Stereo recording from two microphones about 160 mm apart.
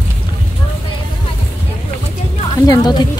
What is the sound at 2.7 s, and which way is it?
Speech, 25° left (ahead or behind).